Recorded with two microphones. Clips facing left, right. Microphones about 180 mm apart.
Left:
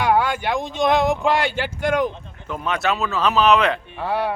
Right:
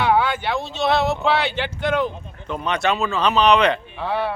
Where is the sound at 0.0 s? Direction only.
10° left (ahead or behind).